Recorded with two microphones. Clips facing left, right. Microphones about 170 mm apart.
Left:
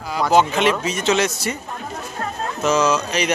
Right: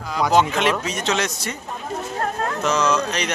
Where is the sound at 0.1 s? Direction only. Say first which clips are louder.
Left 1 dB; centre (ahead or behind).